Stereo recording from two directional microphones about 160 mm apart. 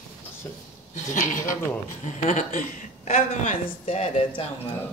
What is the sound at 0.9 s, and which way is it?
A woman's voice, 55° left (ahead or behind).